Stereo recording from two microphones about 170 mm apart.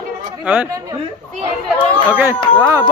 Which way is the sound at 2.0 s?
10° right (ahead or behind).